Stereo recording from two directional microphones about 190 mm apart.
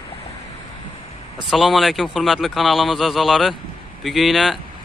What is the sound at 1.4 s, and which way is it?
Speech, centre (ahead or behind).